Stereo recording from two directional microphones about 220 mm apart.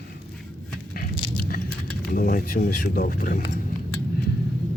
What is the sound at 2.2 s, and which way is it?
Speech, 40° left (ahead or behind).